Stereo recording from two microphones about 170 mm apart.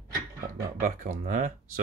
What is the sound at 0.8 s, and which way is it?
Speech, 45° right (ahead or behind).